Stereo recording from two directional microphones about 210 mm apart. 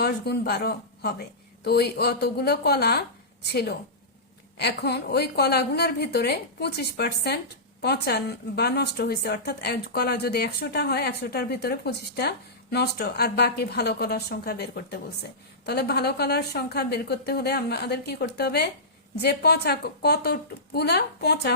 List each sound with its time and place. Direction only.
0.0 s a woman's voice: 50° left (ahead or behind)